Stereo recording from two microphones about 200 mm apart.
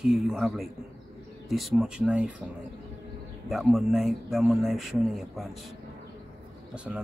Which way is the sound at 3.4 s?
Centre (ahead or behind).